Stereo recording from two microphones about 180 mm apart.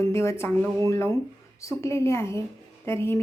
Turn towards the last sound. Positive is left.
turn(degrees=15)  # may be behind; listen again after turning